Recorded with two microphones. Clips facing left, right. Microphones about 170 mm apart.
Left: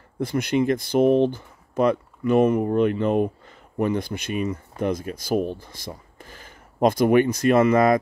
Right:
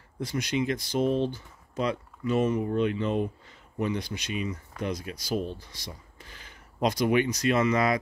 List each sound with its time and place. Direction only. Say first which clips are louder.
0.2 s speech: left 7 dB; 55° left (ahead or behind)